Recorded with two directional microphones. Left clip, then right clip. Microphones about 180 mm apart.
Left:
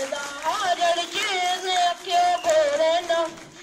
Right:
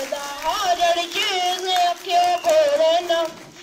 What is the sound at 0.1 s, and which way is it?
Music, 15° right (ahead or behind).